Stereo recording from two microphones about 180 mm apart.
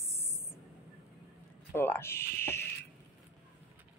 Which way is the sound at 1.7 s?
10° left (ahead or behind).